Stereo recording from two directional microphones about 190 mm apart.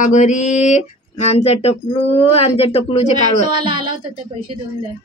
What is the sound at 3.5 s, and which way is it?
Speech, 25° right (ahead or behind).